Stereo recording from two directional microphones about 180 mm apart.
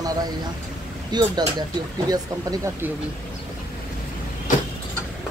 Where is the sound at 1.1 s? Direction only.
25° right (ahead or behind).